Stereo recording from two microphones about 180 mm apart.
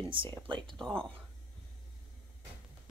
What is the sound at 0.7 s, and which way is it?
Speech, 5° left (ahead or behind).